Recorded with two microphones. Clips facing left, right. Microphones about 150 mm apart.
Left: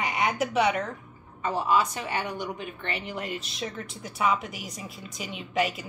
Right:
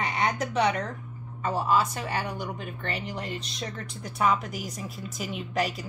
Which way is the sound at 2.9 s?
Centre (ahead or behind).